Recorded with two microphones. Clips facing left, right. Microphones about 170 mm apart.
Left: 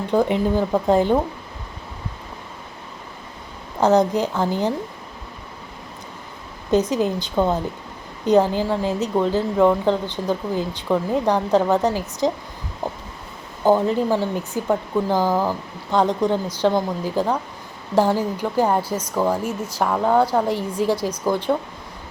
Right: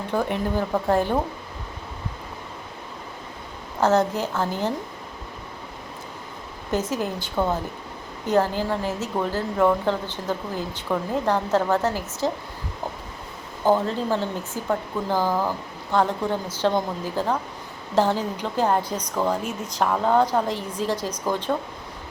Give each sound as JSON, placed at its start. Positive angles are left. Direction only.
{"t": 0.1, "sound": "a woman's voice", "side_deg": 20}
{"t": 3.8, "sound": "a woman's voice", "side_deg": 15}
{"t": 6.7, "sound": "a woman's voice", "side_deg": 15}
{"t": 13.7, "sound": "a woman's voice", "side_deg": 15}